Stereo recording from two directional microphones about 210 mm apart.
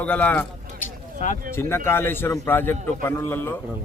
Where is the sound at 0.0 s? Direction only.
5° left (ahead or behind).